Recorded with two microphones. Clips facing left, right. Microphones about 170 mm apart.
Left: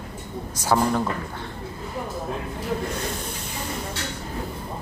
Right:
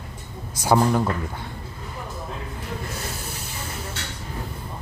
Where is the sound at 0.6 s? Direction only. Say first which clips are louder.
Right 2 dB; 10° right (ahead or behind).